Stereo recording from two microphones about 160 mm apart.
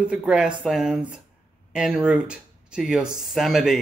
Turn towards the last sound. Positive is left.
turn(degrees=0)  # may be behind; listen again after turning